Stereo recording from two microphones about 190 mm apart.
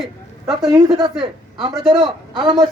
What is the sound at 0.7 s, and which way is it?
Speech, 15° right (ahead or behind).